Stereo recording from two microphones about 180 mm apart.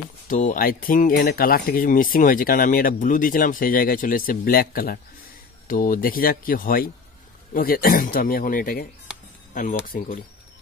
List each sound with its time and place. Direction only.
0.3 s speech: 45° left (ahead or behind)